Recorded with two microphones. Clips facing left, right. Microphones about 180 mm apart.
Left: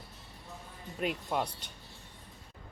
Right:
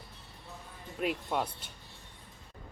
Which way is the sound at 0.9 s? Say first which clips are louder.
Right 1 dB; centre (ahead or behind).